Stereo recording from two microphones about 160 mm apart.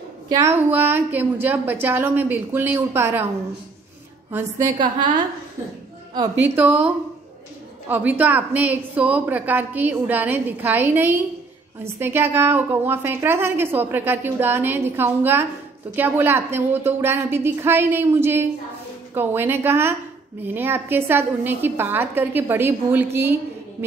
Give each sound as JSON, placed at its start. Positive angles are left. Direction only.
{"t": 0.3, "sound": "a woman's voice", "side_deg": -15}
{"t": 4.3, "sound": "a woman's voice", "side_deg": -20}
{"t": 6.5, "sound": "a woman's voice", "side_deg": -10}
{"t": 7.9, "sound": "a woman's voice", "side_deg": -10}